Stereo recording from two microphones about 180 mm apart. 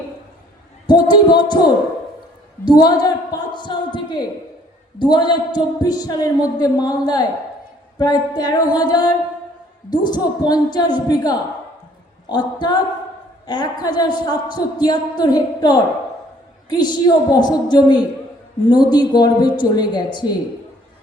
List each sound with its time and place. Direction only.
0.9 s speech: 25° left (ahead or behind)